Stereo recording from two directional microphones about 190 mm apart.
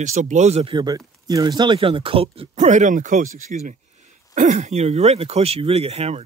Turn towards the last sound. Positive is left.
turn(degrees=-35)  # may be behind; listen again after turning